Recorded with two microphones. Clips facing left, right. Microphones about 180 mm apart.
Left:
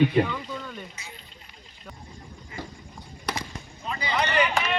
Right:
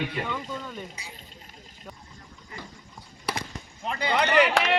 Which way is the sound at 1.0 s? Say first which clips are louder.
Even; 35° right (ahead or behind).